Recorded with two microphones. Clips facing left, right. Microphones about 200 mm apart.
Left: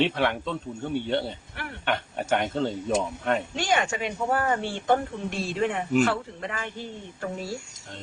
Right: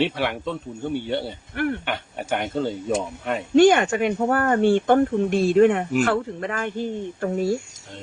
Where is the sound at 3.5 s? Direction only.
55° right (ahead or behind).